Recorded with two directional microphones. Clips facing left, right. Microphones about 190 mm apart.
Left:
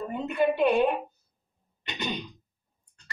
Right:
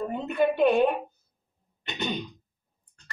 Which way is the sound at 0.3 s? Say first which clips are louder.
Right 1 dB; 55° right (ahead or behind).